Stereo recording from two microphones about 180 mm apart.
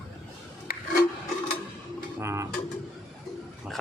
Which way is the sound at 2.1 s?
15° right (ahead or behind).